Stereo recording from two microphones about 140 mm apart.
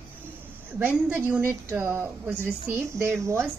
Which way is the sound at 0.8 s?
15° right (ahead or behind).